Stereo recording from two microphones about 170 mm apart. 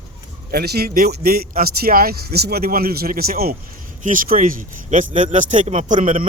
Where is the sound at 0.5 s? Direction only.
65° right (ahead or behind).